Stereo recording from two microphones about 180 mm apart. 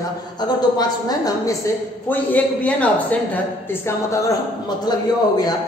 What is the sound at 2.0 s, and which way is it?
A man's voice, 10° left (ahead or behind).